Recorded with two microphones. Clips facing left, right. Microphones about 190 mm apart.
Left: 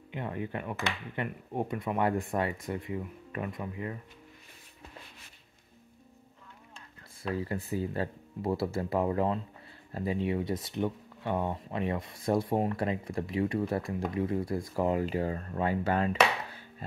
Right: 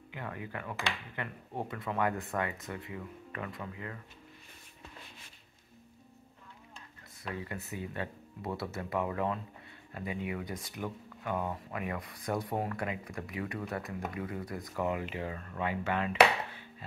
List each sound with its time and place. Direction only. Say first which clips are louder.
0.1 s speech: left 6 dB; 25° left (ahead or behind)
7.2 s speech: left 7 dB; 30° left (ahead or behind)